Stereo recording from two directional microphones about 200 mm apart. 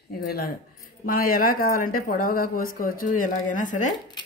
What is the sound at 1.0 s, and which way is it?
Speech, 45° left (ahead or behind).